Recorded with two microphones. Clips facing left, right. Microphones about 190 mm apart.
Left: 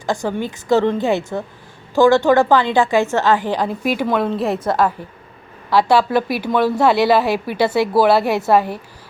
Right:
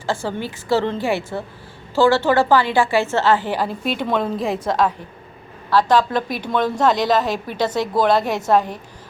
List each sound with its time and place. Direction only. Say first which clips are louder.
0.0 s a woman's voice: left 3 dB; 15° left (ahead or behind)
3.8 s a woman's voice: left 4 dB; 5° left (ahead or behind)